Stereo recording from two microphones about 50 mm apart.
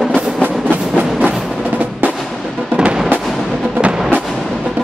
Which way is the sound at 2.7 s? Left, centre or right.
Right.